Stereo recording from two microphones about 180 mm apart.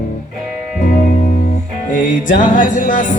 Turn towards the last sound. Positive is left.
turn(degrees=45)  # may be behind; listen again after turning